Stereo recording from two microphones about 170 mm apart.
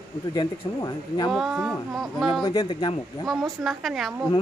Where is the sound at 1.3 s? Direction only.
Centre (ahead or behind).